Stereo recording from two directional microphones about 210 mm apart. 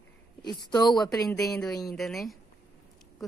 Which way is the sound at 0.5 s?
20° left (ahead or behind).